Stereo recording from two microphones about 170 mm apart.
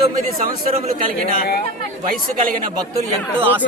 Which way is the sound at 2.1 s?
55° right (ahead or behind).